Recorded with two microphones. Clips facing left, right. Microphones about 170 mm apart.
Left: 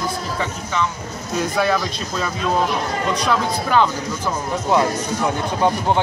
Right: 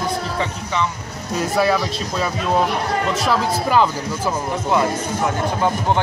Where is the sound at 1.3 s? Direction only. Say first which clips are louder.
Right 1 dB; 5° right (ahead or behind).